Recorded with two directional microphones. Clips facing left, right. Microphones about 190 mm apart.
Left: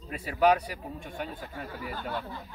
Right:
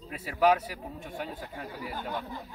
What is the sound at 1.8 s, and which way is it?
Speech, 15° right (ahead or behind).